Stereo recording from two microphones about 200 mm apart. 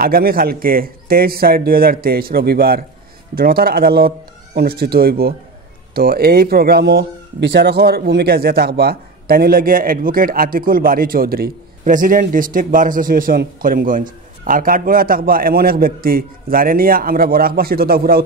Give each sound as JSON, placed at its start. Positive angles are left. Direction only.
{"t": 0.0, "sound": "speech", "side_deg": -50}